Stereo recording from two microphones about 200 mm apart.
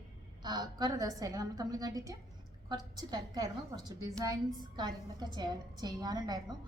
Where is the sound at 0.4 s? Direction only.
20° right (ahead or behind).